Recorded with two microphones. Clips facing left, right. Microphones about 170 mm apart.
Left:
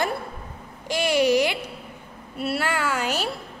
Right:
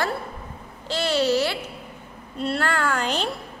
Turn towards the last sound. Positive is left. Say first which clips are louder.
# right 1 dB
turn(degrees=10)  # may be behind; listen again after turning